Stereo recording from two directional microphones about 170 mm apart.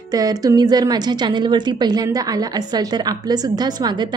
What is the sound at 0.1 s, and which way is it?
A woman's voice, 20° right (ahead or behind).